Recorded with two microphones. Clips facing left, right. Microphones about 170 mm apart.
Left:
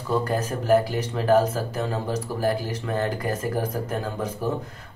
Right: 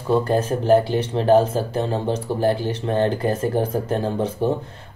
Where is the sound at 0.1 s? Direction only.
30° right (ahead or behind).